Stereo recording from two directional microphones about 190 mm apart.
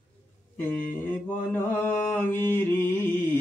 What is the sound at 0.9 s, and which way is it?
Mantra, 10° left (ahead or behind).